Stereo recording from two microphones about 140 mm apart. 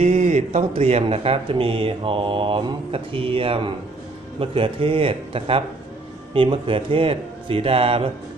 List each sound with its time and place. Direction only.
0.0 s speech: 55° right (ahead or behind)